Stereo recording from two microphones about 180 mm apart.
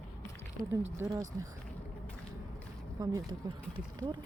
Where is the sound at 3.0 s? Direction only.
20° right (ahead or behind).